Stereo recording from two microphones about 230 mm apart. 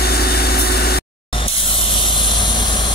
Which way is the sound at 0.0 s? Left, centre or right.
Left.